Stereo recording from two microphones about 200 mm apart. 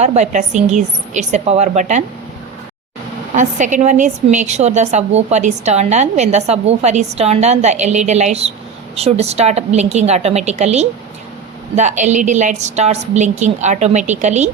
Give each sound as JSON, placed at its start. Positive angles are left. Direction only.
{"t": 0.0, "sound": "a woman's voice", "side_deg": -35}
{"t": 3.3, "sound": "a woman's voice", "side_deg": -40}